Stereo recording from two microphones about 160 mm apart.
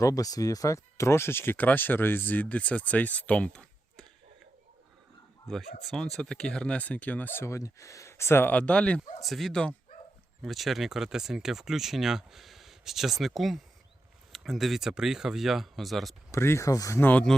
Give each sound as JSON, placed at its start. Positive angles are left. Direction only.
{"t": 0.0, "sound": "speech", "side_deg": 20}
{"t": 5.9, "sound": "speech", "side_deg": 5}
{"t": 16.3, "sound": "speech", "side_deg": 15}